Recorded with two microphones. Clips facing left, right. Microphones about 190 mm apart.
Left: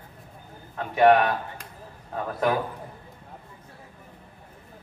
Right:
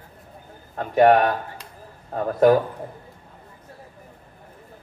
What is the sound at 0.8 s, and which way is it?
A man's voice, 40° right (ahead or behind).